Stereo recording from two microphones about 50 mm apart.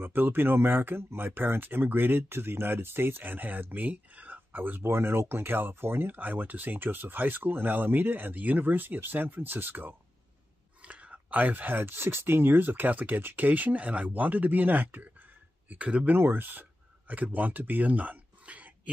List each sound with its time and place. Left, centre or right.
0.0 s speech: right
10.8 s speech: right
16.2 s speech: right